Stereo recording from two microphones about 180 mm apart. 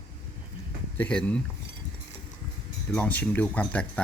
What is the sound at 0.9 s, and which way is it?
Speech, 5° left (ahead or behind).